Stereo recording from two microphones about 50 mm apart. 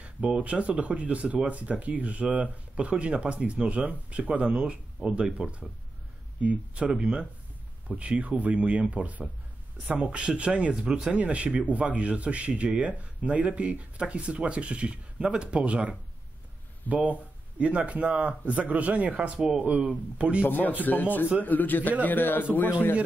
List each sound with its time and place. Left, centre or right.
0.0 s speech: right
16.9 s speech: right
19.3 s speech: centre
20.2 s speech: right
20.4 s a man's voice: left